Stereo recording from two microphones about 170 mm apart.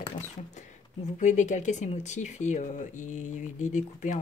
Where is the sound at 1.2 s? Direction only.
45° left (ahead or behind).